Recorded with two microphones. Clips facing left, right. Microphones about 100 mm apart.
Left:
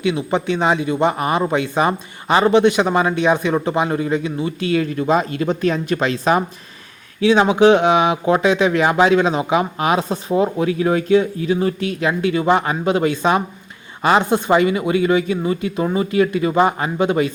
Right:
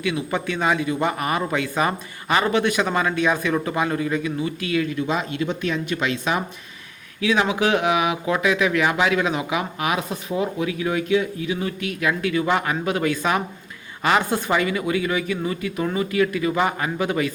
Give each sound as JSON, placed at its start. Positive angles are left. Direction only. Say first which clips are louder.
{"t": 0.0, "sound": "a man's voice", "louder": "left 5 dB", "side_deg": 25}